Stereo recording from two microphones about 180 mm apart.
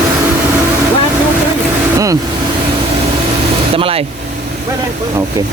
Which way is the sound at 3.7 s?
30° right (ahead or behind).